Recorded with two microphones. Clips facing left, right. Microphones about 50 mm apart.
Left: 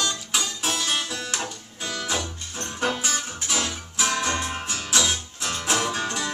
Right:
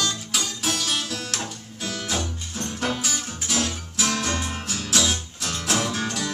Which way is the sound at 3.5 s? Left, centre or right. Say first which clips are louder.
Right 3 dB; left.